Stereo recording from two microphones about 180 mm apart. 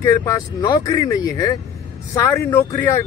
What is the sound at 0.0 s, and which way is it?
Speech, 15° left (ahead or behind).